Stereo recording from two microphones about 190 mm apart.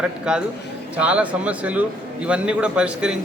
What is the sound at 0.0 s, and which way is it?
A man's voice, 5° right (ahead or behind).